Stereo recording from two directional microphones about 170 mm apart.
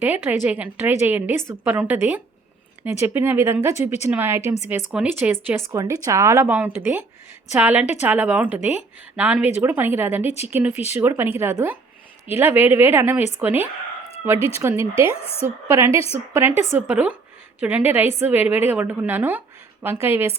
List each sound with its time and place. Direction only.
0.0 s a woman's voice: 10° right (ahead or behind)
4.4 s a woman's voice: 40° left (ahead or behind)
4.9 s a woman's voice: 10° right (ahead or behind)
10.2 s a woman's voice: 40° left (ahead or behind)
10.5 s a woman's voice: 10° right (ahead or behind)
14.9 s a woman's voice: 35° left (ahead or behind)
15.4 s a woman's voice: 15° right (ahead or behind)
15.9 s a woman's voice: 35° left (ahead or behind)
16.3 s a woman's voice: 15° right (ahead or behind)